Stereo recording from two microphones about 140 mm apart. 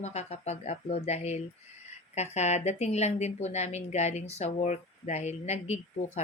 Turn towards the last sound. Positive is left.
turn(degrees=50)  # may be behind; listen again after turning